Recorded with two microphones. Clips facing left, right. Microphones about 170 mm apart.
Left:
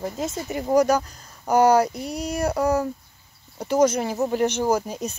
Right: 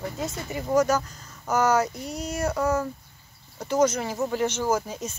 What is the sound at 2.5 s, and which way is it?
Speech, 30° left (ahead or behind).